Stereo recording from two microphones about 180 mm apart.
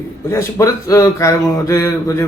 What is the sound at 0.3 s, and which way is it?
A man's voice, 15° left (ahead or behind).